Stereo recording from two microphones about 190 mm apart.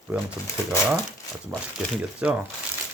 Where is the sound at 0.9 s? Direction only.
5° right (ahead or behind).